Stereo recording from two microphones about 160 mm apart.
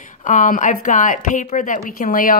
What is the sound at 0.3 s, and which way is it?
A woman's voice, 55° left (ahead or behind).